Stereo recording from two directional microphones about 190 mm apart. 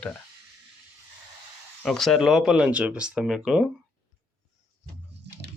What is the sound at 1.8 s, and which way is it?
Speech, centre (ahead or behind).